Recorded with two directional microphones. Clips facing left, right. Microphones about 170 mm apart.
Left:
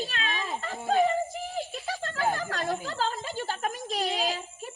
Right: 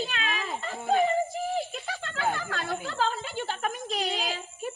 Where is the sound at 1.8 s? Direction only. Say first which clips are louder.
Left 2 dB; 40° left (ahead or behind).